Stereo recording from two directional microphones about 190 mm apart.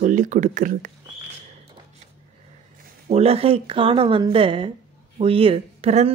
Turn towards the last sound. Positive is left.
turn(degrees=-35)  # may be behind; listen again after turning